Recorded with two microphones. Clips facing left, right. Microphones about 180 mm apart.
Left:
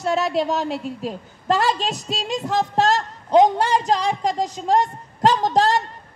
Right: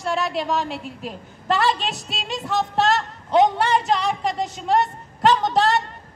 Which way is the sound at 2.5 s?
40° left (ahead or behind).